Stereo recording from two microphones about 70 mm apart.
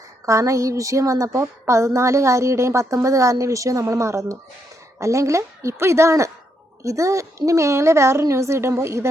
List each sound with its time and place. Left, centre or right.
0.3 s a woman's voice: right